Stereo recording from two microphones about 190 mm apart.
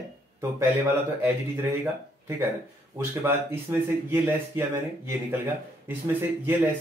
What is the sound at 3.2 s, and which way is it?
Speech, 10° right (ahead or behind).